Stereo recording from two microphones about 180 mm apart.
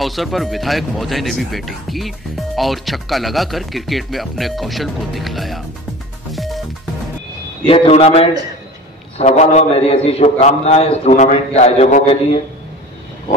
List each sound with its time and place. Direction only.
0.0 s speech: centre (ahead or behind)
6.3 s music: centre (ahead or behind)
7.6 s a man's voice: 30° left (ahead or behind)